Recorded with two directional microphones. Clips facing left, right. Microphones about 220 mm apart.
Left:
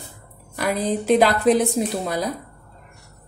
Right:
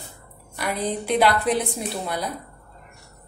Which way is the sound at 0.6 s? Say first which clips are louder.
Left 4 dB; 40° left (ahead or behind).